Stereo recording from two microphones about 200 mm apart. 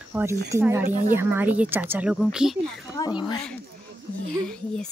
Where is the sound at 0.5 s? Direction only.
15° right (ahead or behind).